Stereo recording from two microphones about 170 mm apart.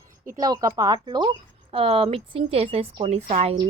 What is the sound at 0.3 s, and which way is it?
Speech, 25° right (ahead or behind).